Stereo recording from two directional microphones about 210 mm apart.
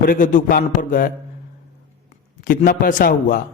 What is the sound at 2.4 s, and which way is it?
Speech, 45° left (ahead or behind).